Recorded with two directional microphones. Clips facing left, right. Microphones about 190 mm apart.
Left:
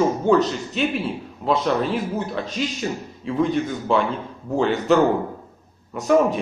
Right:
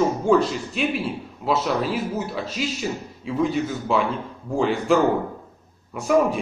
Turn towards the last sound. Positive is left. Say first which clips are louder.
# left 2 dB
turn(degrees=0)  # may be behind; listen again after turning